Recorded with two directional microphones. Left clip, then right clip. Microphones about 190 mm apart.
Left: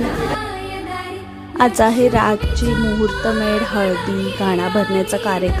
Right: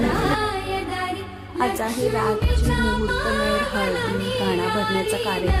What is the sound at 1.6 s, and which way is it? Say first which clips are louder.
Speech: left 10 dB; 40° left (ahead or behind).